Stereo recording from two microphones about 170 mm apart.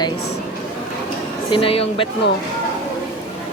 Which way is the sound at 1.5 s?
35° left (ahead or behind).